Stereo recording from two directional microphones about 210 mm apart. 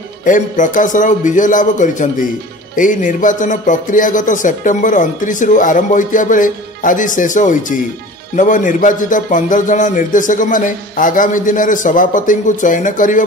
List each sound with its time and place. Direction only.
0.2 s speech: 40° left (ahead or behind)